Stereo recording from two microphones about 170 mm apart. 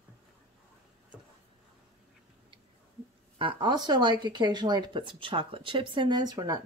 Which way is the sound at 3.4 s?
30° right (ahead or behind).